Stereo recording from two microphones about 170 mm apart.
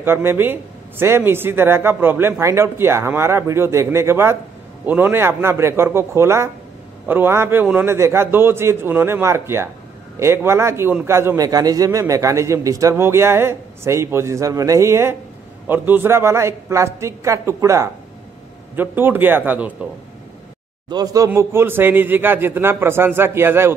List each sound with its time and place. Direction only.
0.0 s a man's voice: 15° right (ahead or behind)
20.9 s a man's voice: 20° right (ahead or behind)